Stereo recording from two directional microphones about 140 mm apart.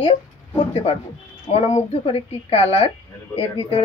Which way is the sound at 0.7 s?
45° left (ahead or behind).